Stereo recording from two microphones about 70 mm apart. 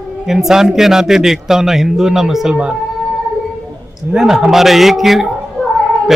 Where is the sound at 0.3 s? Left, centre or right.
Centre.